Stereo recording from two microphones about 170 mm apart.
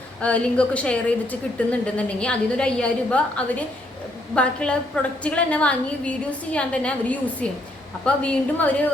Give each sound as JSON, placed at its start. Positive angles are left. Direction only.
{"t": 0.2, "sound": "a woman's voice", "side_deg": 5}